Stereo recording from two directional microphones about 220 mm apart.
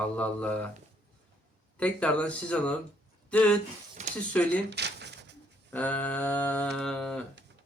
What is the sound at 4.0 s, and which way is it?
Speech, 30° right (ahead or behind).